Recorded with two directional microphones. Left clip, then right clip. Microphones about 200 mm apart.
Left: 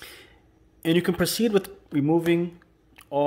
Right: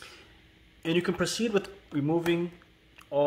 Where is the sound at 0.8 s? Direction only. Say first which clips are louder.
Left 5 dB; 35° left (ahead or behind).